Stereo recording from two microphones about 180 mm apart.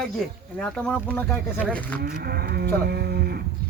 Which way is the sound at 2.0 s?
60° right (ahead or behind).